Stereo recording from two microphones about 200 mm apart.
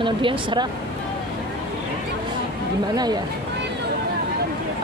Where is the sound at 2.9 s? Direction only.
20° right (ahead or behind).